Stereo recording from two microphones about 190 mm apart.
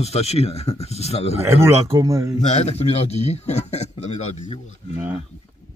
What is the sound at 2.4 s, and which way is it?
A man's voice, 35° left (ahead or behind).